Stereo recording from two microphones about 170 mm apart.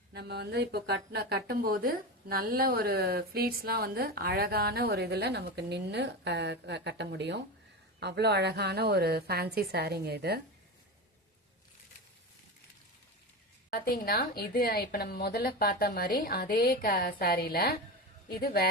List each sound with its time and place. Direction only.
0.1 s a woman's voice: 75° right (ahead or behind)
7.9 s a woman's voice: 75° right (ahead or behind)
13.7 s a woman's voice: 65° left (ahead or behind)